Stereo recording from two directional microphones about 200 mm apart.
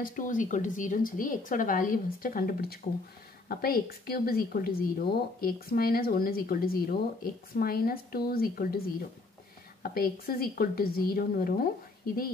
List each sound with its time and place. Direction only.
0.0 s speech: 40° left (ahead or behind)